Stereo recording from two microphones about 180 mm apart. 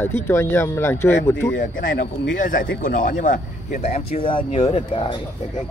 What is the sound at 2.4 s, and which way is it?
Speech, 50° left (ahead or behind).